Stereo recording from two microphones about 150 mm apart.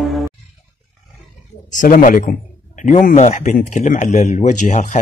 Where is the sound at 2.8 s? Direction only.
55° left (ahead or behind).